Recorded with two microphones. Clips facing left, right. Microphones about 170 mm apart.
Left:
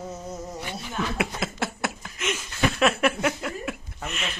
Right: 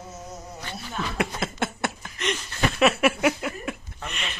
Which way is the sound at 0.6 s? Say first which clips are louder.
Left 3 dB; 15° left (ahead or behind).